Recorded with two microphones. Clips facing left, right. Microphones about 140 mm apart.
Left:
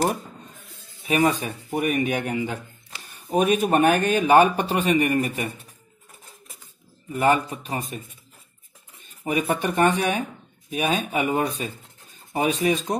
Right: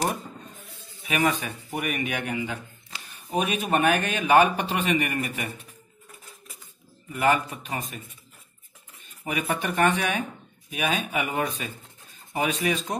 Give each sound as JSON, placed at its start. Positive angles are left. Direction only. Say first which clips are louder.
{"t": 1.0, "sound": "a man's voice", "louder": "left 4 dB", "side_deg": 35}
{"t": 7.1, "sound": "a man's voice", "louder": "left 3 dB", "side_deg": 35}
{"t": 9.2, "sound": "a man's voice", "louder": "left 4 dB", "side_deg": 35}